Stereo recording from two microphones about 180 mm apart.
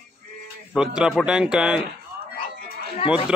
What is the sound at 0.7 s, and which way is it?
Speech, 5° right (ahead or behind).